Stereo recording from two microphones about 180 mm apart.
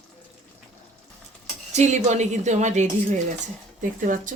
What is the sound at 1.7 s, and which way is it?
Speech, 40° right (ahead or behind).